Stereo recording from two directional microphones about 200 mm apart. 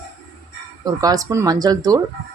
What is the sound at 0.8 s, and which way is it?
Speech, 20° right (ahead or behind).